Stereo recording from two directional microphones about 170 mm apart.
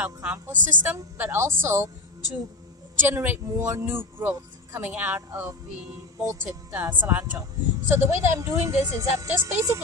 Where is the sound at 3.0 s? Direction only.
10° right (ahead or behind).